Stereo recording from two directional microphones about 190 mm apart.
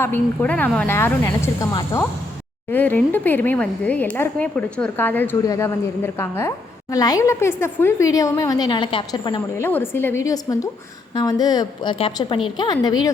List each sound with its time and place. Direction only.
0.0 s speech: 10° left (ahead or behind)
9.6 s a woman's voice: 10° left (ahead or behind)